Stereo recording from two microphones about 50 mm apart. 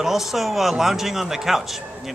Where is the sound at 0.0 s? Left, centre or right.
Centre.